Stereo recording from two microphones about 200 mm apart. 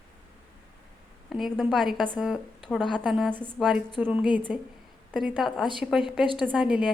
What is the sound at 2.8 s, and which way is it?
Speech, 25° left (ahead or behind).